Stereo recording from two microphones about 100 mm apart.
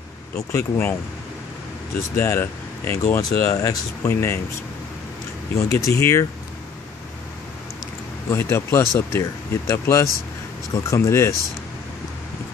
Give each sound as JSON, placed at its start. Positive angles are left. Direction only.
{"t": 0.5, "sound": "speech", "side_deg": 25}
{"t": 2.1, "sound": "speech", "side_deg": 25}
{"t": 3.2, "sound": "speech", "side_deg": 35}
{"t": 5.7, "sound": "speech", "side_deg": 30}
{"t": 8.3, "sound": "speech", "side_deg": 25}